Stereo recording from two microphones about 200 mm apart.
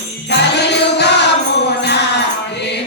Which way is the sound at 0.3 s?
55° left (ahead or behind).